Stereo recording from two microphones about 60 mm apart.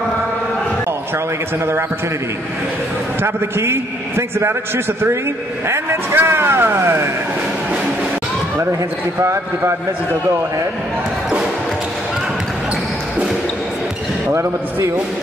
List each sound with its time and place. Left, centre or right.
3.2 s speech: right
9.2 s speech: right
14.2 s speech: right